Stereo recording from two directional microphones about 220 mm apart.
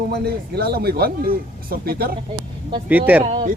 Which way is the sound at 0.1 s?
45° right (ahead or behind).